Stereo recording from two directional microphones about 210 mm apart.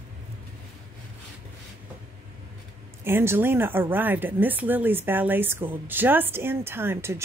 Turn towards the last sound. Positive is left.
turn(degrees=-10)  # may be behind; listen again after turning